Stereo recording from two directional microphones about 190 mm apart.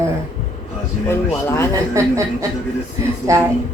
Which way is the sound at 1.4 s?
15° left (ahead or behind).